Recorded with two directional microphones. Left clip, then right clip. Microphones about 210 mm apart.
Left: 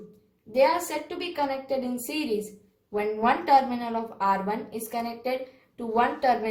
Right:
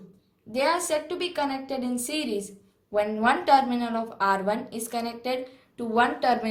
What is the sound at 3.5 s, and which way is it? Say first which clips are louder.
A woman's voice: even; 40° right (ahead or behind).